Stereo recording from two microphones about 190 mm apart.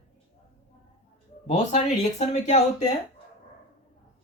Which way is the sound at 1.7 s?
35° left (ahead or behind).